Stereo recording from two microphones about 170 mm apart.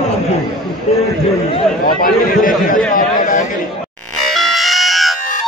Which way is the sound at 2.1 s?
55° left (ahead or behind).